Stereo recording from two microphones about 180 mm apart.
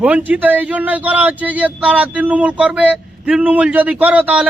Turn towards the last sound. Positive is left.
turn(degrees=-10)  # may be behind; listen again after turning